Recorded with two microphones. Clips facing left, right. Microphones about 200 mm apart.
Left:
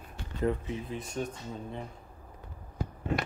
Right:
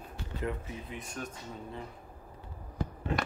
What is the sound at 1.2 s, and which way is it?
Speech, 25° left (ahead or behind).